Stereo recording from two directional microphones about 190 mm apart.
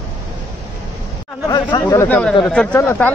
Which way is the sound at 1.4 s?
20° left (ahead or behind).